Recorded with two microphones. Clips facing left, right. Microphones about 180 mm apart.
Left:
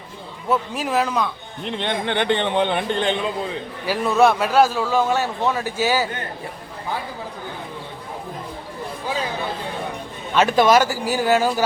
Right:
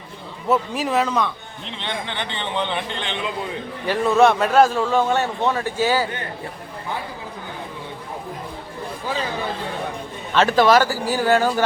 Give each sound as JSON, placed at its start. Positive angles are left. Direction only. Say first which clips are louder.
{"t": 0.4, "sound": "a man's voice", "louder": "right 2 dB", "side_deg": 0}
{"t": 1.6, "sound": "a man's voice", "louder": "left 6 dB", "side_deg": 55}
{"t": 3.8, "sound": "a man's voice", "louder": "right 1 dB", "side_deg": 5}
{"t": 10.3, "sound": "speech", "louder": "even", "side_deg": 10}